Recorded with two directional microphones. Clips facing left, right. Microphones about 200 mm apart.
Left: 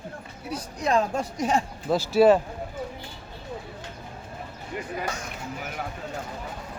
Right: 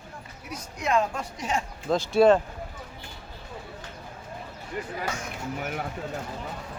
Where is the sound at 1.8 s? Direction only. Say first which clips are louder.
Left 1 dB; 5° left (ahead or behind).